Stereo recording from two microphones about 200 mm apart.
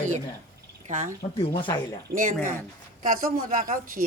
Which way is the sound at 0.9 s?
40° right (ahead or behind).